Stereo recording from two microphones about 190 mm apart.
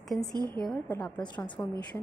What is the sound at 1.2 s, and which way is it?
Speech, 25° left (ahead or behind).